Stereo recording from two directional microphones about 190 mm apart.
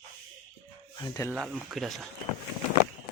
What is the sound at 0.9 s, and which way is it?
Speech, 20° left (ahead or behind).